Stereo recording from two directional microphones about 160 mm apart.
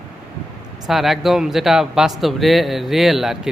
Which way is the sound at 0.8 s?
Centre (ahead or behind).